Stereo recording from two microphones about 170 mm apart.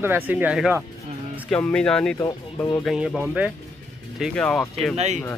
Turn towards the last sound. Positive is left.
turn(degrees=-40)  # may be behind; listen again after turning